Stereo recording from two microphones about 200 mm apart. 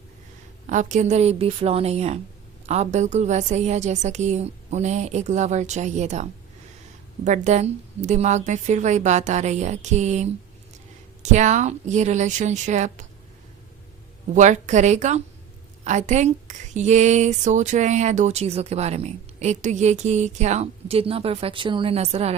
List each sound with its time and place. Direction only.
0.7 s speech: 40° right (ahead or behind)
7.3 s speech: 35° right (ahead or behind)
14.3 s speech: 35° right (ahead or behind)